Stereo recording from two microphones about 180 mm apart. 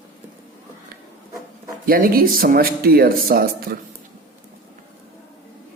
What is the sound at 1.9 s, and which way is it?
Speech, 55° right (ahead or behind).